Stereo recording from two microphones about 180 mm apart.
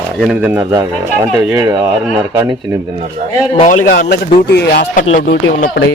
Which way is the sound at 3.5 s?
45° left (ahead or behind).